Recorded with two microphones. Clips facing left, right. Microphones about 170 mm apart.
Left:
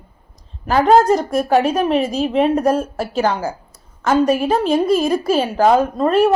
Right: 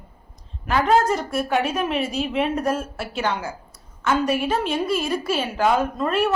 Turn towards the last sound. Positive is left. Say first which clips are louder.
# left 7 dB
turn(degrees=35)  # may be behind; listen again after turning